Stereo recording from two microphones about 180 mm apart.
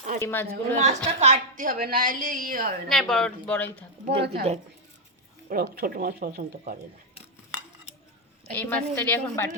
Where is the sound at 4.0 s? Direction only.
30° right (ahead or behind).